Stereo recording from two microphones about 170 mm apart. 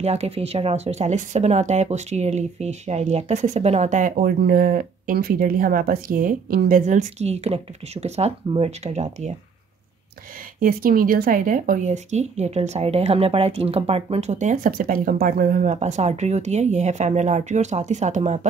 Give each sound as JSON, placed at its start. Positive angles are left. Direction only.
{"t": 0.0, "sound": "speech", "side_deg": -40}
{"t": 10.6, "sound": "speech", "side_deg": -55}
{"t": 15.7, "sound": "speech", "side_deg": -40}